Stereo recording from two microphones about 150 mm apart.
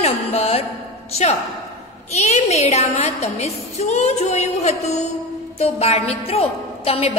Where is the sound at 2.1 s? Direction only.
45° left (ahead or behind).